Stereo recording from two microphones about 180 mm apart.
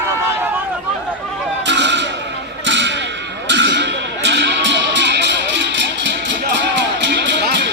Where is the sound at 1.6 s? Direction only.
75° right (ahead or behind).